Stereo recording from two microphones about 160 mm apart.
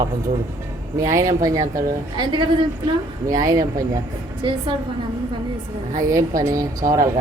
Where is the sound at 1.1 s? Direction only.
20° right (ahead or behind).